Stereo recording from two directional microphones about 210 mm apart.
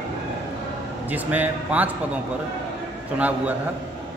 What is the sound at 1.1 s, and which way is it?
Speech, 5° right (ahead or behind).